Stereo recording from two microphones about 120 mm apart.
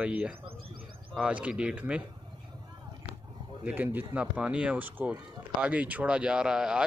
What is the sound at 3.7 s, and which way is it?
Speech, 15° right (ahead or behind).